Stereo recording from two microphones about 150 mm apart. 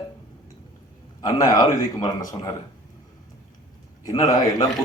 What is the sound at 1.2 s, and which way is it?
Speech, 25° left (ahead or behind).